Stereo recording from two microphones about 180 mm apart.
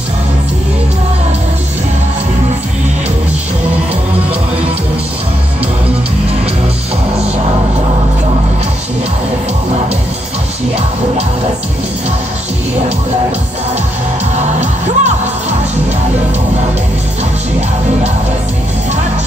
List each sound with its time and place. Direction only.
14.3 s music: 40° right (ahead or behind)